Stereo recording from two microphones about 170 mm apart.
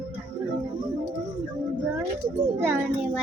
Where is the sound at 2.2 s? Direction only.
15° right (ahead or behind).